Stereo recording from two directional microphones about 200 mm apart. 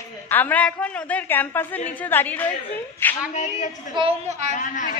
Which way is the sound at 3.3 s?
35° left (ahead or behind).